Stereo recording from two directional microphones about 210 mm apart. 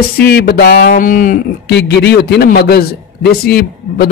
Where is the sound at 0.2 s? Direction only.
50° left (ahead or behind).